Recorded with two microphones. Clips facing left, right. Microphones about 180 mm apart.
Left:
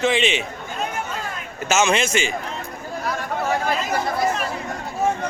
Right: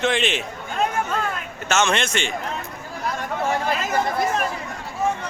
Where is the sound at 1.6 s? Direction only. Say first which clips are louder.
Left 2 dB; 5° left (ahead or behind).